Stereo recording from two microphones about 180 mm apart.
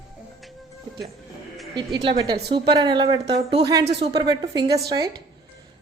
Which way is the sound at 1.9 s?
20° right (ahead or behind).